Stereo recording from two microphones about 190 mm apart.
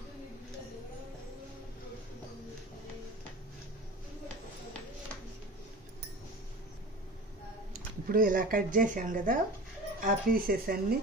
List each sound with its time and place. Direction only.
7.7 s speech: 45° right (ahead or behind)